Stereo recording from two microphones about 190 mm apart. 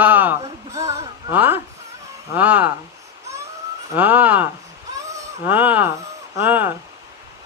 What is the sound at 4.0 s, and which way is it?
Speech, 10° right (ahead or behind).